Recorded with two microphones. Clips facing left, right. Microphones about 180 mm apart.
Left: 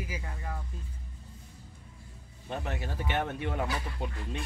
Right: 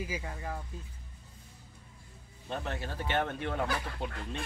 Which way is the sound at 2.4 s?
10° left (ahead or behind).